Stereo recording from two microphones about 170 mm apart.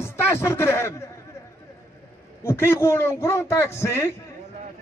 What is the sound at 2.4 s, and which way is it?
A man's voice, 15° left (ahead or behind).